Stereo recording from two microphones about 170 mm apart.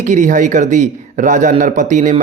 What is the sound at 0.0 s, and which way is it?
Speech, 45° right (ahead or behind).